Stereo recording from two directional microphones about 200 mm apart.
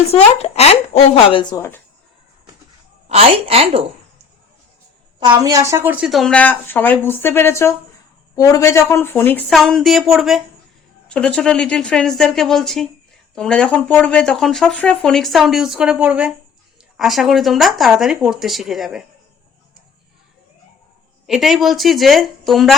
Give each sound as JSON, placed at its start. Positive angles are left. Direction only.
{"t": 0.1, "sound": "speech", "side_deg": 30}
{"t": 3.1, "sound": "a woman's voice", "side_deg": -30}
{"t": 5.2, "sound": "a woman's voice", "side_deg": -20}
{"t": 21.2, "sound": "speech", "side_deg": 0}